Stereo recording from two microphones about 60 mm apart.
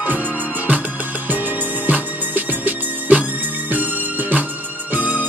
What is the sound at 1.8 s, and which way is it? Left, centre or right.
Music, right.